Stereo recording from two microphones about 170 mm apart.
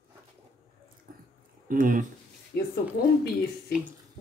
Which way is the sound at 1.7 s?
55° right (ahead or behind).